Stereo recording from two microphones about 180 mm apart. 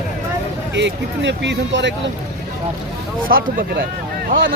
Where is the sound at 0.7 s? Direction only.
75° right (ahead or behind).